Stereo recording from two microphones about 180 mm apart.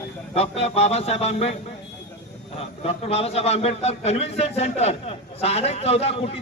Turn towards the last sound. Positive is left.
turn(degrees=35)  # may be behind; listen again after turning